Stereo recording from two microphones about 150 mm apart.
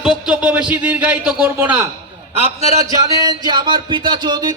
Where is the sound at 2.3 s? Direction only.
40° right (ahead or behind).